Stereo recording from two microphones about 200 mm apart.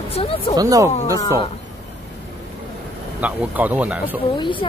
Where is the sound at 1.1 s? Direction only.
15° left (ahead or behind).